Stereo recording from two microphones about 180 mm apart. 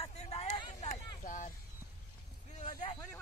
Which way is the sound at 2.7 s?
25° left (ahead or behind).